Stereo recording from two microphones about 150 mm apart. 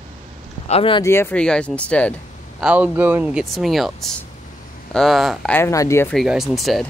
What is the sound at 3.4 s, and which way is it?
Speech, centre (ahead or behind).